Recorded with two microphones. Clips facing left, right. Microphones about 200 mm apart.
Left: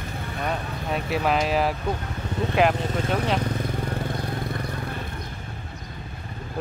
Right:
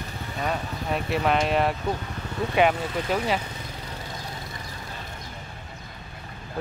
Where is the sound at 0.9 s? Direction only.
Centre (ahead or behind).